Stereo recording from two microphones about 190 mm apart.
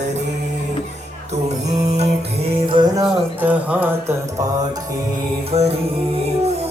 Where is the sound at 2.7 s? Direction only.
25° right (ahead or behind).